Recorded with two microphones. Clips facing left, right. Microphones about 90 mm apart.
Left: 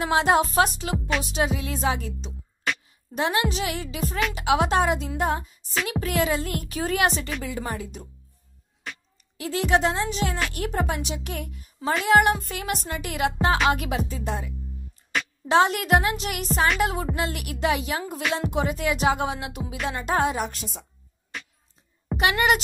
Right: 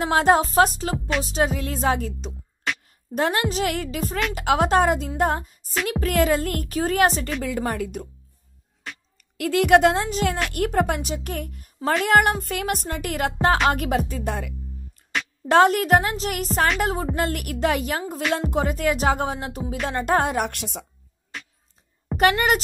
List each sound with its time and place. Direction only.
0.0 s speech: 40° right (ahead or behind)
1.2 s music: 40° right (ahead or behind)
7.4 s music: 55° right (ahead or behind)
9.4 s speech: 60° right (ahead or behind)
10.0 s music: 45° right (ahead or behind)
15.4 s speech: 50° right (ahead or behind)
16.8 s music: 40° right (ahead or behind)
18.3 s speech: 40° right (ahead or behind); by 20.8 s 75° right (ahead or behind)
22.1 s a woman's voice: 45° right (ahead or behind)